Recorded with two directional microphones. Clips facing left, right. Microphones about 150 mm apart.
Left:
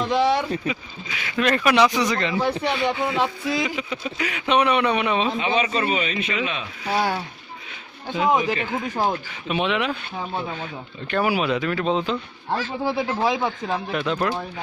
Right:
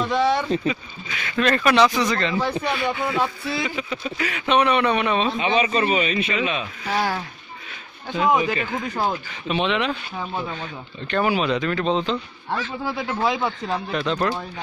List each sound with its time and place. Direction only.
0.7 s speech: 10° left (ahead or behind)
5.4 s a man's voice: 5° right (ahead or behind)
6.8 s speech: 15° left (ahead or behind)
12.8 s speech: 25° left (ahead or behind); by 14.4 s 10° left (ahead or behind)